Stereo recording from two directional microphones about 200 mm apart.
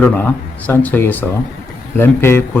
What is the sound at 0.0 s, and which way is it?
Speech, 10° left (ahead or behind).